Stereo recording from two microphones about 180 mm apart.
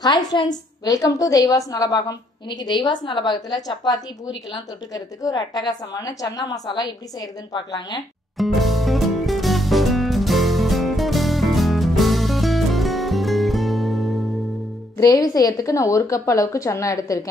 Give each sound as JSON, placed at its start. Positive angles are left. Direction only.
{"t": 0.0, "sound": "a woman's voice", "side_deg": 20}
{"t": 8.4, "sound": "music", "side_deg": 0}
{"t": 15.0, "sound": "a woman's voice", "side_deg": 20}